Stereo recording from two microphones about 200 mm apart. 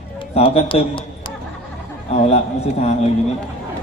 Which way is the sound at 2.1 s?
30° left (ahead or behind).